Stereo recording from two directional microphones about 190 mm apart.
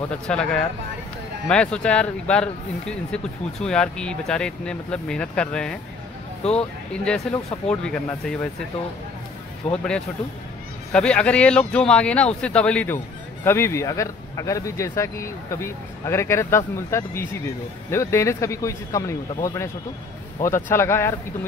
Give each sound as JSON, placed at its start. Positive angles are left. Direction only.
{"t": 0.3, "sound": "speech", "side_deg": 5}
{"t": 6.4, "sound": "speech", "side_deg": 30}
{"t": 7.3, "sound": "speech", "side_deg": 5}
{"t": 9.6, "sound": "speech", "side_deg": 35}
{"t": 10.9, "sound": "speech", "side_deg": 5}